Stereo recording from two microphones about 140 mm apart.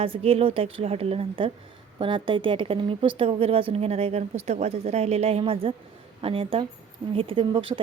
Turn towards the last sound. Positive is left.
turn(degrees=-40)  # may be behind; listen again after turning